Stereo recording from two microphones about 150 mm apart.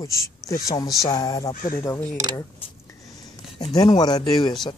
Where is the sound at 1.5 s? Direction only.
65° left (ahead or behind).